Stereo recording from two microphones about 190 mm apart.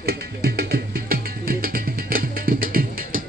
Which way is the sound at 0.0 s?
55° right (ahead or behind).